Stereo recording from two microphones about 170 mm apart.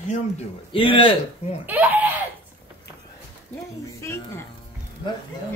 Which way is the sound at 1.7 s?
10° right (ahead or behind).